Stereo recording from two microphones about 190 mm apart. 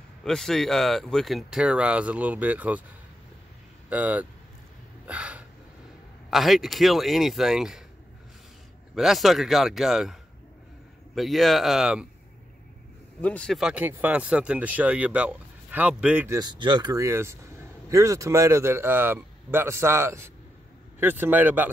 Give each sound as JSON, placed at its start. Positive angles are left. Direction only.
{"t": 0.2, "sound": "speech", "side_deg": 5}
{"t": 3.9, "sound": "speech", "side_deg": -10}
{"t": 5.0, "sound": "a sound", "side_deg": -5}
{"t": 6.3, "sound": "speech", "side_deg": 0}
{"t": 8.9, "sound": "speech", "side_deg": 0}
{"t": 11.1, "sound": "speech", "side_deg": 0}
{"t": 13.2, "sound": "speech", "side_deg": 5}
{"t": 16.3, "sound": "speech", "side_deg": -25}